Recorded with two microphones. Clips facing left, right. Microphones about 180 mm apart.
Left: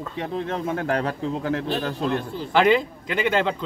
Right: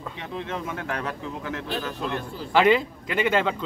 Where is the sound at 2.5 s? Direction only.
Centre (ahead or behind).